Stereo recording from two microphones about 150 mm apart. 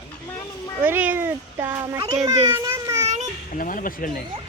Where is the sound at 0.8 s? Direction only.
15° right (ahead or behind).